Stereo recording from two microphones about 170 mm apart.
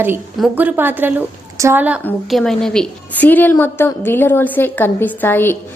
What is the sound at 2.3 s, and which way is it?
A woman's voice, centre (ahead or behind).